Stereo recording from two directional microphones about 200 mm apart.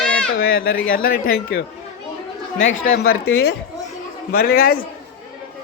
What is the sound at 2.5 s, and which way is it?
Speech, 75° left (ahead or behind).